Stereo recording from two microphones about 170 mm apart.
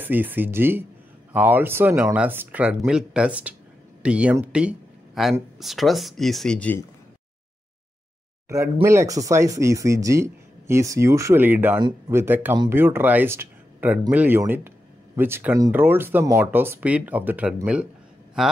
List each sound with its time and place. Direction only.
0.0 s speech: 10° right (ahead or behind); by 6.9 s 10° left (ahead or behind)
8.8 s speech: 15° right (ahead or behind)